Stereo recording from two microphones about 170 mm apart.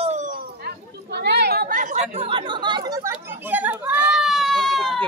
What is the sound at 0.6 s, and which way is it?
Chatter, 75° right (ahead or behind).